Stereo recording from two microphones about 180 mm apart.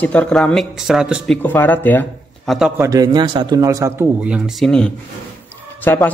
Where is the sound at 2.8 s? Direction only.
20° right (ahead or behind).